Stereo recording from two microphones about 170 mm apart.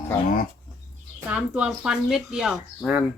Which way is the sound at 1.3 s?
5° right (ahead or behind).